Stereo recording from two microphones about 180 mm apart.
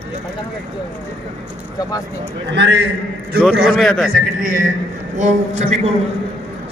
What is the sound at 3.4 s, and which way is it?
Speech, 5° right (ahead or behind).